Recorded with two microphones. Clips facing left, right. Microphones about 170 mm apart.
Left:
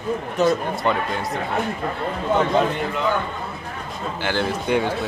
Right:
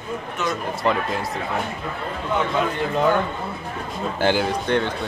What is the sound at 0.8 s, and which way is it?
Speech, centre (ahead or behind).